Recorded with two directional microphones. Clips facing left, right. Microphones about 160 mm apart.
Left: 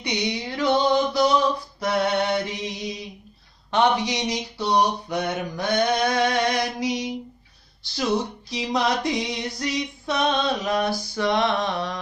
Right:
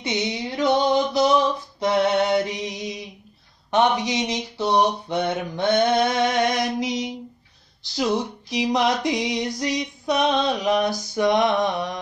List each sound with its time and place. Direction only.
0.0 s a sound: 25° right (ahead or behind)
1.8 s mantra: 20° right (ahead or behind)
7.8 s female singing: 20° right (ahead or behind)